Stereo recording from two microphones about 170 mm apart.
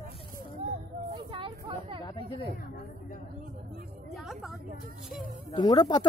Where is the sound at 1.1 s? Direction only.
30° right (ahead or behind).